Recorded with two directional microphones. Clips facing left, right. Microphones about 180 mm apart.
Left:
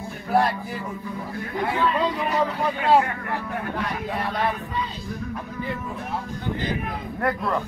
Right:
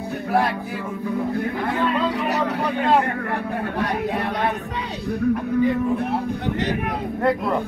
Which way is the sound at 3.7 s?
70° right (ahead or behind).